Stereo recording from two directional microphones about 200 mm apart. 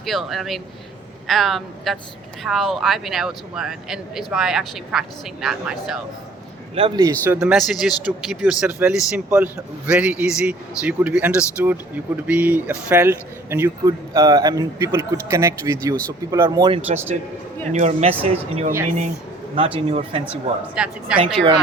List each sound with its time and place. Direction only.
0.0 s speech: centre (ahead or behind)
6.7 s speech: 25° right (ahead or behind)
7.3 s a man's voice: centre (ahead or behind); by 17.0 s 25° right (ahead or behind)
17.7 s speech: 35° right (ahead or behind)
20.2 s speech: 5° right (ahead or behind)